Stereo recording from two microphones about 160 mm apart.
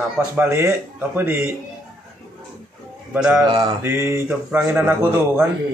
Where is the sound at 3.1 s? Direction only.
5° right (ahead or behind).